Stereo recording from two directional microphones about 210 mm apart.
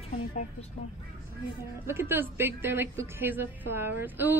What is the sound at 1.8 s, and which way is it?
A woman's voice, 10° right (ahead or behind).